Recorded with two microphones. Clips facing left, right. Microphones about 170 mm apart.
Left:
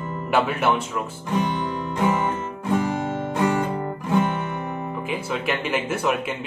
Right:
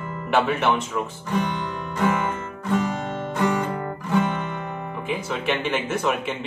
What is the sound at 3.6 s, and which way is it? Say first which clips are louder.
Music: left 1 dB; 20° left (ahead or behind).